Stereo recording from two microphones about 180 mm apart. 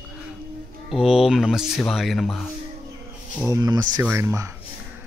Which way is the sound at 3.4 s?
20° right (ahead or behind).